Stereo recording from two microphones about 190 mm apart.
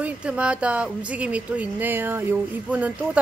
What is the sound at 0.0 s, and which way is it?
Speech, 5° right (ahead or behind).